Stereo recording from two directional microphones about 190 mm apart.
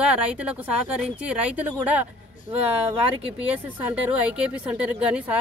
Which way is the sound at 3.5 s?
5° right (ahead or behind).